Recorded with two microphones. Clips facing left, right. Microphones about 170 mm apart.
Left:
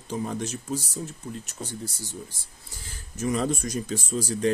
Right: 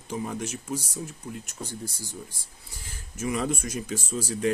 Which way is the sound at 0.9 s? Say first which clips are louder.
Left 1 dB; 10° right (ahead or behind).